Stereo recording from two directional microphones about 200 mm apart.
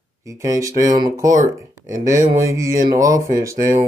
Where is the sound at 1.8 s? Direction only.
40° right (ahead or behind).